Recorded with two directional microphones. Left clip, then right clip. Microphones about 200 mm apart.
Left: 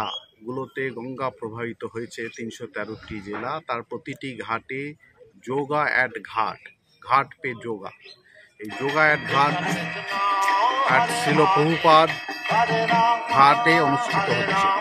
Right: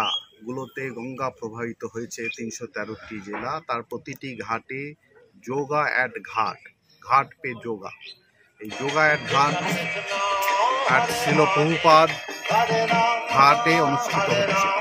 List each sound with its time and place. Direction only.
0.0 s speech: 5° left (ahead or behind)
8.6 s speech: 50° right (ahead or behind)
8.9 s speech: centre (ahead or behind)
9.5 s speech: 45° right (ahead or behind)
11.8 s speech: centre (ahead or behind)
12.1 s music: 45° right (ahead or behind)
13.8 s speech: 50° right (ahead or behind)